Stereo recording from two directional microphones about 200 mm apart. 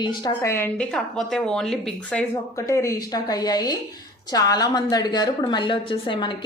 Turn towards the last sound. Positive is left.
turn(degrees=25)  # may be behind; listen again after turning